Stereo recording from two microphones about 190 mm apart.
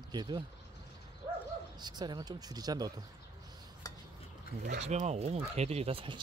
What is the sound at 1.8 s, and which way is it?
Speech, 20° right (ahead or behind).